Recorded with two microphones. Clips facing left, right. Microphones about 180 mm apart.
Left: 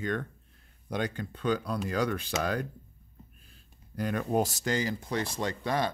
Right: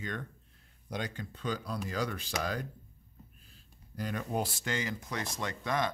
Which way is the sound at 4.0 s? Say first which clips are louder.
Left 6 dB; 55° left (ahead or behind).